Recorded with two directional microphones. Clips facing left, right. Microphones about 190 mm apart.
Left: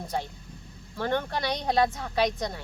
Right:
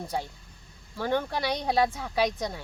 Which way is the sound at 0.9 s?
10° right (ahead or behind).